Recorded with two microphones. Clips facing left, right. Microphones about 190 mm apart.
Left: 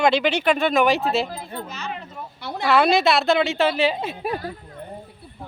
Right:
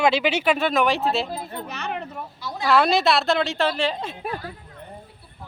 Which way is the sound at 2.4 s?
65° left (ahead or behind).